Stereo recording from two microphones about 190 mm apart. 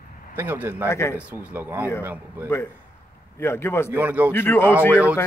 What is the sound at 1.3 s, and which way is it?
Speech, 10° right (ahead or behind).